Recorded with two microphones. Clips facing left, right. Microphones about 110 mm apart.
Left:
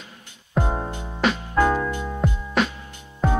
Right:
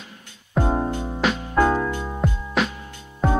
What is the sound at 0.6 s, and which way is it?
Music, 15° right (ahead or behind).